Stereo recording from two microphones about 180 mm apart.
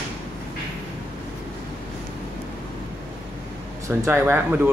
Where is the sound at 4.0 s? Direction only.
10° right (ahead or behind).